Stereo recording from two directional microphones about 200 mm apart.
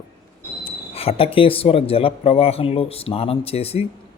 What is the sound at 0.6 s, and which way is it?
Speech, 30° left (ahead or behind).